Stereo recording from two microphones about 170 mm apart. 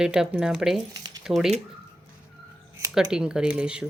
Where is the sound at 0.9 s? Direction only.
20° right (ahead or behind).